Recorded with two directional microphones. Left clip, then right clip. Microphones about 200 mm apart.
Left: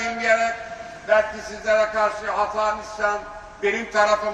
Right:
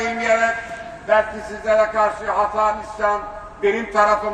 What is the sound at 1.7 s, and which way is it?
A man's voice, 15° left (ahead or behind).